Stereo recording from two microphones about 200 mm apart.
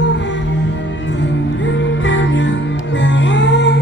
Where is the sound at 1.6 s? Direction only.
65° left (ahead or behind).